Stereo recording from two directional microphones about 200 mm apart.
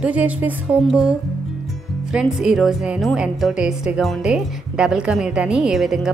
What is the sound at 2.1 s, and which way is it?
A woman's voice, 5° right (ahead or behind).